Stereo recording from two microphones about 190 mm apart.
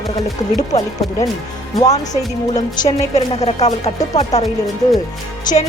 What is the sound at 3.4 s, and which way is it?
Speech, 35° left (ahead or behind).